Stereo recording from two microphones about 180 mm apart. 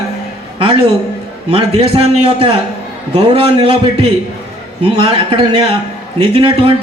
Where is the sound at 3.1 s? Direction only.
35° right (ahead or behind).